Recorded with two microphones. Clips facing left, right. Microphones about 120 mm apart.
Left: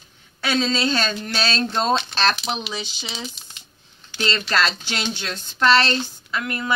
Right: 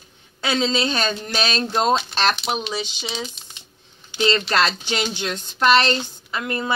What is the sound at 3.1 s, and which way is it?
Speech, centre (ahead or behind).